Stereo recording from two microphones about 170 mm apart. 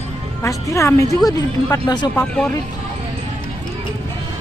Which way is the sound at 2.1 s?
5° left (ahead or behind).